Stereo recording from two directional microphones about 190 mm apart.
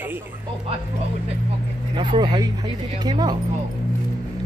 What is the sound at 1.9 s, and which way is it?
Speech, 25° right (ahead or behind).